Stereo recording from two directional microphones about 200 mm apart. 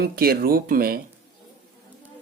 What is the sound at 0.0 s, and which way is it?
Speech, 50° right (ahead or behind).